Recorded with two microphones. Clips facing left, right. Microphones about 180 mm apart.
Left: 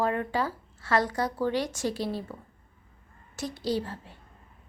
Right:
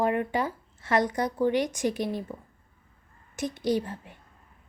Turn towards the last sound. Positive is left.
turn(degrees=-15)  # may be behind; listen again after turning